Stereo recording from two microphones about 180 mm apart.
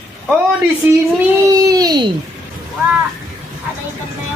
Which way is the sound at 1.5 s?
20° right (ahead or behind).